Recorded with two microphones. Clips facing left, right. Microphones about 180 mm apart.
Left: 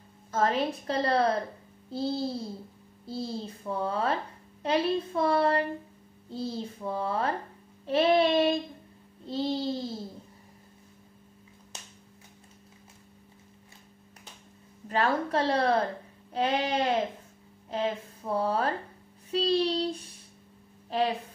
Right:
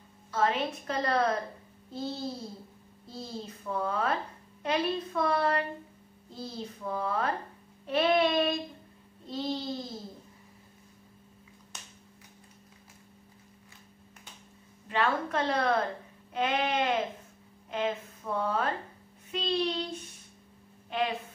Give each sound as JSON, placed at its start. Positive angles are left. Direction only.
{"t": 0.3, "sound": "a woman's voice", "side_deg": 40}
{"t": 14.9, "sound": "a woman's voice", "side_deg": 40}